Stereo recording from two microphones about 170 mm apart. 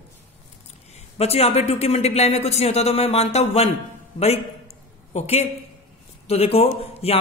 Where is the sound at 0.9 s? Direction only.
35° left (ahead or behind).